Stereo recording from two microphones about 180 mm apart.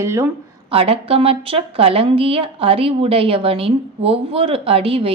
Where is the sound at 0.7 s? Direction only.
30° right (ahead or behind).